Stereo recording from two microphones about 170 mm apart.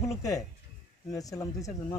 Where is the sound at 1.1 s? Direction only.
20° left (ahead or behind).